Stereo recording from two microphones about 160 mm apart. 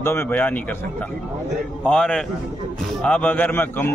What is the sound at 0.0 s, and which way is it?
Speech, 15° left (ahead or behind).